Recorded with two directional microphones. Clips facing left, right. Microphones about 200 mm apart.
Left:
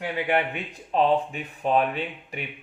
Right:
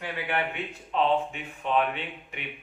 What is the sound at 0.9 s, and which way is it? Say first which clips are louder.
Speech: left 4 dB; 35° left (ahead or behind).